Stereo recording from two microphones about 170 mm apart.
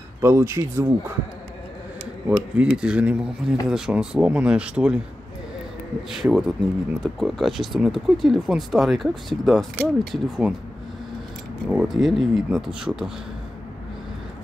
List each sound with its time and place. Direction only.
0.2 s speech: 15° right (ahead or behind)
2.2 s speech: 5° right (ahead or behind)
6.0 s speech: centre (ahead or behind)
11.7 s speech: centre (ahead or behind)